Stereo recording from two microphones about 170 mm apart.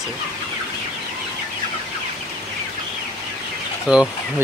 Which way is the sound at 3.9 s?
5° right (ahead or behind).